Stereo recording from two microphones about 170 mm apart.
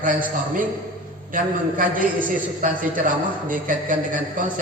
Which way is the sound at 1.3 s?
50° right (ahead or behind).